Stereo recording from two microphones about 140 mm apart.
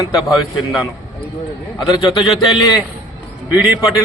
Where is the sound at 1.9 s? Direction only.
35° left (ahead or behind).